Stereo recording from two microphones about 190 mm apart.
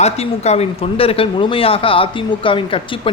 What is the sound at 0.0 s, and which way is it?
Speech, 35° left (ahead or behind).